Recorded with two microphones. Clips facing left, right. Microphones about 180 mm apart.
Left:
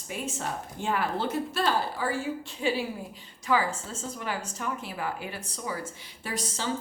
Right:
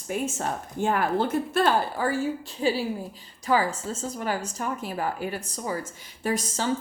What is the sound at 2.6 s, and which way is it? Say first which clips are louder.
A woman's voice: right 4 dB; 35° right (ahead or behind).